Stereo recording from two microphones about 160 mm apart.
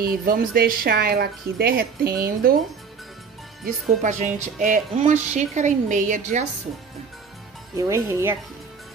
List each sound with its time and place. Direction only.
0.0 s a woman's voice: 70° right (ahead or behind)
4.0 s a woman's voice: 50° right (ahead or behind)
7.7 s speech: 15° right (ahead or behind)